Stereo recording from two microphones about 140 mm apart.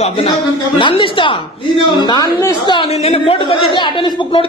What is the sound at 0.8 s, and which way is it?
A woman's voice, 35° left (ahead or behind).